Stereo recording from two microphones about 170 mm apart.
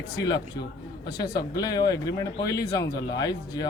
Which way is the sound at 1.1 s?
20° left (ahead or behind).